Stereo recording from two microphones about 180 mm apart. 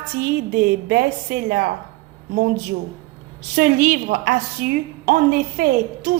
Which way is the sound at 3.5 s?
50° right (ahead or behind).